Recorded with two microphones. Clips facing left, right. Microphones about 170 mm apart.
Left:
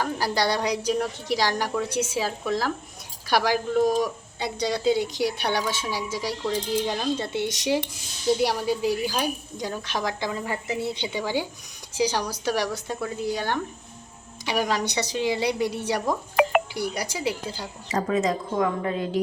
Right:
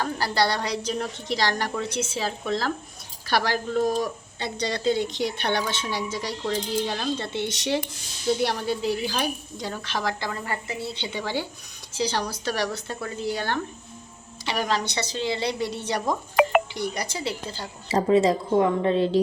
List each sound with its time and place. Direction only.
0.0 s speech: 15° left (ahead or behind)
17.8 s speech: 30° right (ahead or behind)